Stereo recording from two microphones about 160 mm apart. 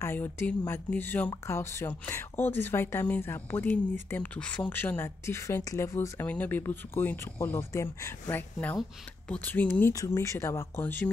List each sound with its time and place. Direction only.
0.0 s a woman's voice: 15° left (ahead or behind)